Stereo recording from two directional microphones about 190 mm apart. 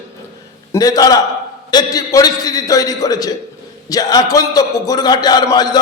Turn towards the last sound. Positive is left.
turn(degrees=20)  # may be behind; listen again after turning